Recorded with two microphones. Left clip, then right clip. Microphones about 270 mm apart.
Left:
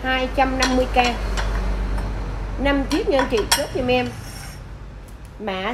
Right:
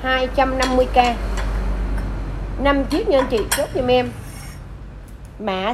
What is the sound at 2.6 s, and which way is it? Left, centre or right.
Speech, centre.